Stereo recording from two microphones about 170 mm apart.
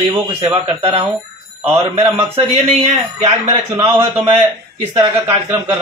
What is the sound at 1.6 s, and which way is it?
Speech, 15° right (ahead or behind).